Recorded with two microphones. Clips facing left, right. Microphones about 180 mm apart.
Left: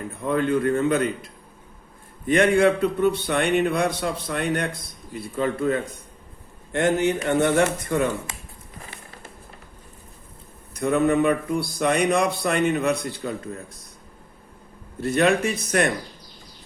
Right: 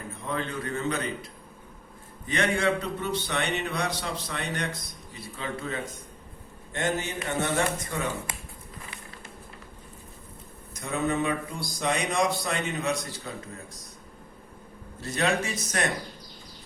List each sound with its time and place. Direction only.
0.3 s speech: 55° left (ahead or behind)
2.2 s speech: 55° left (ahead or behind)
6.7 s a man's voice: 60° left (ahead or behind)
10.8 s a man's voice: 60° left (ahead or behind)
15.0 s a man's voice: 60° left (ahead or behind)